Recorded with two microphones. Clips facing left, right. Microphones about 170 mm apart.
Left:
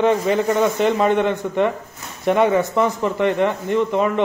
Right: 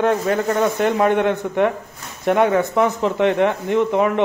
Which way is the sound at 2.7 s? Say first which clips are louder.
Right 1 dB; 15° right (ahead or behind).